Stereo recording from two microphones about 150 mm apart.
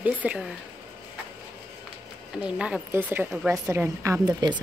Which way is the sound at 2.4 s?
5° right (ahead or behind).